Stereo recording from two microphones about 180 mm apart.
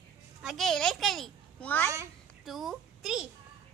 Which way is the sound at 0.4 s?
Centre (ahead or behind).